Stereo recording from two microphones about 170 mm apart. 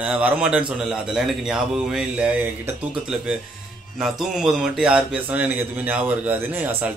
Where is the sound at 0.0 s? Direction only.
5° right (ahead or behind).